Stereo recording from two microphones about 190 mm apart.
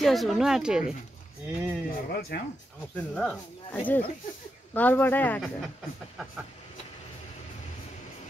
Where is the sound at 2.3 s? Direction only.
55° left (ahead or behind).